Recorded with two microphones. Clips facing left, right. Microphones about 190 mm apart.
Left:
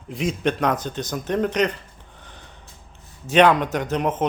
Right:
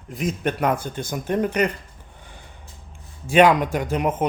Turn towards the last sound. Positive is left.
turn(degrees=-10)  # may be behind; listen again after turning